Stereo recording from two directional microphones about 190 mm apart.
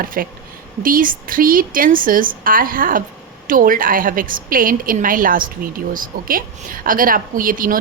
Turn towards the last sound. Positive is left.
turn(degrees=-45)  # may be behind; listen again after turning